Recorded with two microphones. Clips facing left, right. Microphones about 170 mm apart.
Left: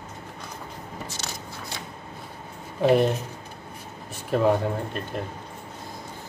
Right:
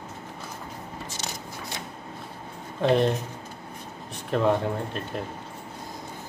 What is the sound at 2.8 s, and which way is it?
Speech, 5° left (ahead or behind).